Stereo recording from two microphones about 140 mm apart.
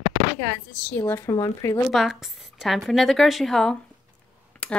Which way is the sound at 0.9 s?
20° left (ahead or behind).